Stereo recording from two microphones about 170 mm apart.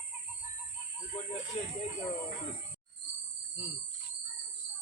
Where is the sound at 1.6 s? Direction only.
40° left (ahead or behind).